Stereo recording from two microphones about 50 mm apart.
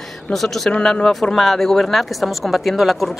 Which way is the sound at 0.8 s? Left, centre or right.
Centre.